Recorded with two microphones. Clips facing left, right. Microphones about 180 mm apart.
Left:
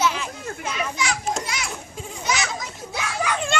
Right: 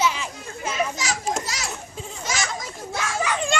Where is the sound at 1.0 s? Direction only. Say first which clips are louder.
Left 1 dB; 40° right (ahead or behind).